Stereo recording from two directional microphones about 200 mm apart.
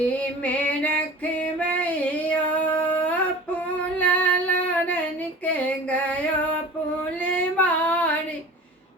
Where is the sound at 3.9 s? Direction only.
5° left (ahead or behind).